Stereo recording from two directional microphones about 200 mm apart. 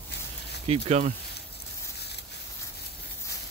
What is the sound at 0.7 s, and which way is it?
Speech, 30° right (ahead or behind).